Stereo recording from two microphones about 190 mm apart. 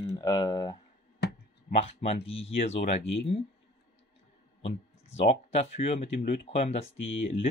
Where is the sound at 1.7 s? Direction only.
35° left (ahead or behind).